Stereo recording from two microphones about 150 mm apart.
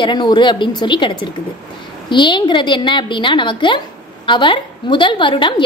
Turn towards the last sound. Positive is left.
turn(degrees=35)  # may be behind; listen again after turning